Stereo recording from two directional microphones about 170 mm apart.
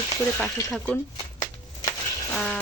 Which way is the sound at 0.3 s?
5° left (ahead or behind).